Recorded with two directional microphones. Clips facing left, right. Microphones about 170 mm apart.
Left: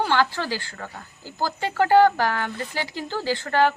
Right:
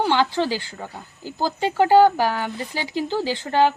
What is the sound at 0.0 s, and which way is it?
Speech, 20° right (ahead or behind).